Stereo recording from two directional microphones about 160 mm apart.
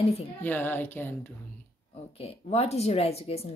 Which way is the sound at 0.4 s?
10° left (ahead or behind).